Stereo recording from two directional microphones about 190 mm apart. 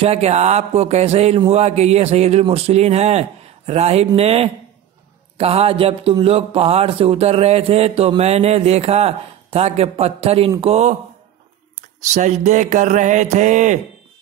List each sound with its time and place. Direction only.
0.0 s speech: 35° right (ahead or behind)
12.0 s speech: 40° right (ahead or behind)